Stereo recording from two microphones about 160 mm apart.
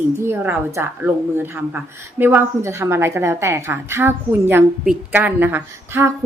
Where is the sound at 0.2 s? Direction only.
15° right (ahead or behind).